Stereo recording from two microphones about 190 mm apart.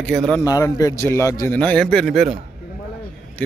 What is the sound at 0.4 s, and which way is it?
A man's voice, 20° left (ahead or behind).